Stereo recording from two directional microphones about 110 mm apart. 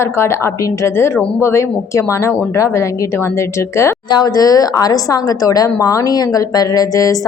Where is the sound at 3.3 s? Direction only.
25° left (ahead or behind).